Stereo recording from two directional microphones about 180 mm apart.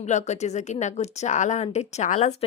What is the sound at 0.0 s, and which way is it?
Speech, 40° left (ahead or behind).